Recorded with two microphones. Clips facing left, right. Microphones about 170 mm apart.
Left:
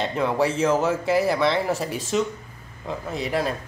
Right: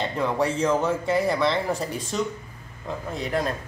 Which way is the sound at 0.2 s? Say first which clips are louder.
Left 2 dB; 5° left (ahead or behind).